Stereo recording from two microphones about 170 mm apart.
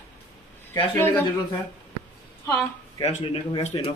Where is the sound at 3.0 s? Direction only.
35° left (ahead or behind).